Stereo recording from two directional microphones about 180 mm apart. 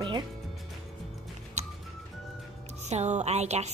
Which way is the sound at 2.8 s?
40° right (ahead or behind).